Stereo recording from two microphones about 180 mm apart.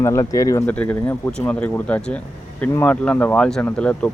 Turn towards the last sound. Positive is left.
turn(degrees=5)  # may be behind; listen again after turning